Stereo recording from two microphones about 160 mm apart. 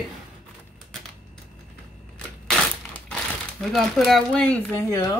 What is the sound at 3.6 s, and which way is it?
Speech, 5° left (ahead or behind).